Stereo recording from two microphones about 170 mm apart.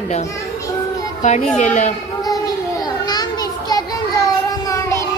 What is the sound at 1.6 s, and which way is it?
Speech, 45° left (ahead or behind).